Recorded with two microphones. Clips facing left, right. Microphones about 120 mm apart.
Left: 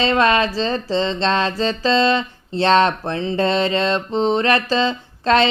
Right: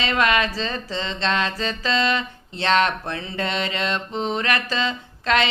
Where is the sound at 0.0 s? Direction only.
30° left (ahead or behind).